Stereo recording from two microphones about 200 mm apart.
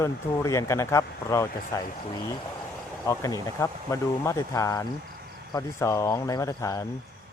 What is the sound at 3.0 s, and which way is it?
Speech, 15° left (ahead or behind).